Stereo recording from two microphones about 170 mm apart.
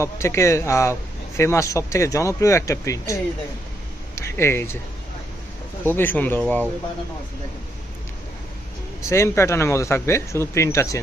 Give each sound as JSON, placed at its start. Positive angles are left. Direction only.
{"t": 0.0, "sound": "speech", "side_deg": 15}
{"t": 4.1, "sound": "a sound", "side_deg": 15}
{"t": 5.9, "sound": "speech", "side_deg": 10}
{"t": 9.0, "sound": "speech", "side_deg": 15}